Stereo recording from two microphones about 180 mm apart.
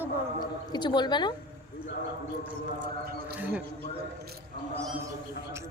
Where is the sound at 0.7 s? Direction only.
25° left (ahead or behind).